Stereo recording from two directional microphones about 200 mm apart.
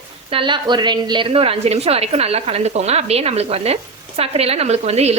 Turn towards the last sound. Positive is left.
turn(degrees=-30)  # may be behind; listen again after turning